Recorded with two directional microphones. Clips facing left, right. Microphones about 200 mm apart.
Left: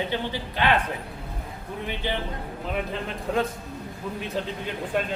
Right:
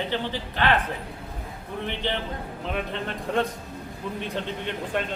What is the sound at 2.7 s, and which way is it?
A man's voice, 5° left (ahead or behind).